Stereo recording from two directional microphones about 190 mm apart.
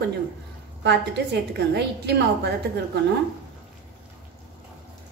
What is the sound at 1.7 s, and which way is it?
A woman's voice, 60° right (ahead or behind).